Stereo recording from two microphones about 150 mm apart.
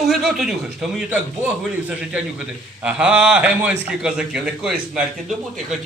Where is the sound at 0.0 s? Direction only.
Centre (ahead or behind).